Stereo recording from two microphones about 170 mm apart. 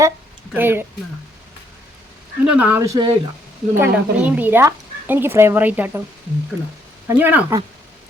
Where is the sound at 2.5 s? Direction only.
10° right (ahead or behind).